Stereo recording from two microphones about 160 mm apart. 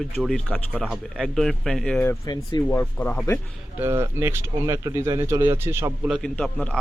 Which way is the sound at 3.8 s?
15° right (ahead or behind).